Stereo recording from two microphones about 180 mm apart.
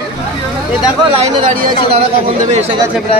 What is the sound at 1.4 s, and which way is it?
Speech, 50° right (ahead or behind).